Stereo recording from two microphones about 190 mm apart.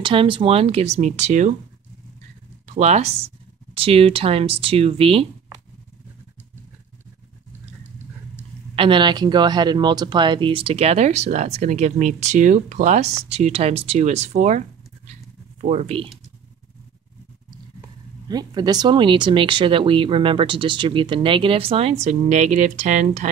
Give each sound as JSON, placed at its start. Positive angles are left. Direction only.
{"t": 0.0, "sound": "speech", "side_deg": -25}
{"t": 2.7, "sound": "speech", "side_deg": -35}
{"t": 8.7, "sound": "speech", "side_deg": -25}
{"t": 15.6, "sound": "speech", "side_deg": -35}
{"t": 18.3, "sound": "speech", "side_deg": -20}